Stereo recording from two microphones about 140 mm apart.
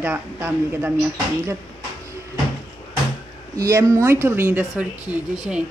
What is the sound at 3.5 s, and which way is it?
Speech, 20° right (ahead or behind).